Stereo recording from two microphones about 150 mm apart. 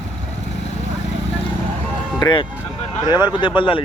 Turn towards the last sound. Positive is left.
turn(degrees=35)  # may be behind; listen again after turning